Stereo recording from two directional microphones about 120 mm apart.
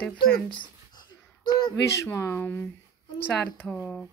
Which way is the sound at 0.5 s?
40° left (ahead or behind).